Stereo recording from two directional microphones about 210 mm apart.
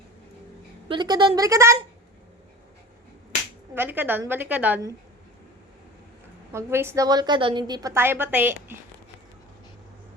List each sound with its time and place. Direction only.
0.9 s a woman's voice: 20° right (ahead or behind)
3.8 s a woman's voice: 10° right (ahead or behind)
6.5 s a woman's voice: 10° right (ahead or behind)